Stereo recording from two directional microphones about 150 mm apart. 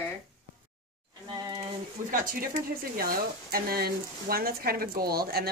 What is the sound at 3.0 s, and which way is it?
Speech, 75° right (ahead or behind).